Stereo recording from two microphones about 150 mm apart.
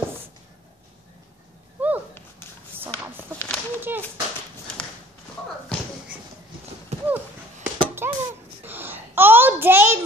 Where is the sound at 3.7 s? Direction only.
15° right (ahead or behind).